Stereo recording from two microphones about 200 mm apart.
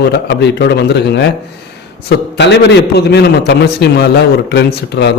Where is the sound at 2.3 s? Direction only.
60° left (ahead or behind).